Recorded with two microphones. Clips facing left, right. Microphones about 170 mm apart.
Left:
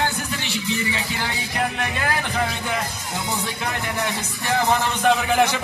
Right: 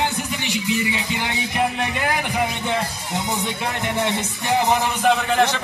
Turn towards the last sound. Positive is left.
turn(degrees=5)  # may be behind; listen again after turning